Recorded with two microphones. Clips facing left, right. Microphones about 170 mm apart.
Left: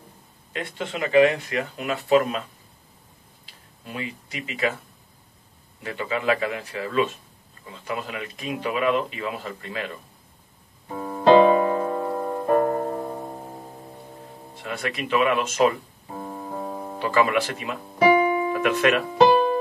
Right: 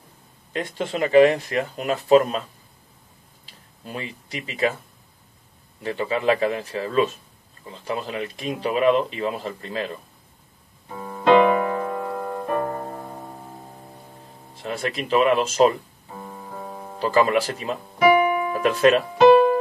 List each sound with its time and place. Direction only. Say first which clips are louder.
0.5 s speech: right 4 dB; 35° right (ahead or behind)
3.8 s speech: even; 35° right (ahead or behind)
5.8 s speech: right 3 dB; 35° right (ahead or behind)
11.1 s music: left 1 dB; 30° left (ahead or behind)
14.6 s speech: right 2 dB; 30° right (ahead or behind)
17.0 s speech: right 2 dB; 35° right (ahead or behind)
17.9 s music: right 1 dB; 30° left (ahead or behind)
18.5 s speech: right 3 dB; 35° right (ahead or behind)
19.1 s music: right 4 dB; 30° left (ahead or behind)